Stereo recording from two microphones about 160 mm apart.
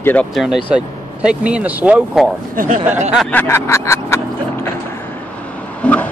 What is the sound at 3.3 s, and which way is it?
Vehicle, 10° left (ahead or behind).